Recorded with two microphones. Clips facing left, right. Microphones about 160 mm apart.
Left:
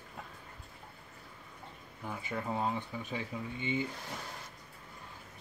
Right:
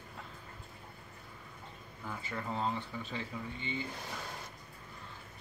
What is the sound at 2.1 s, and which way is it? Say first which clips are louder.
Speech: left 3 dB; 15° left (ahead or behind).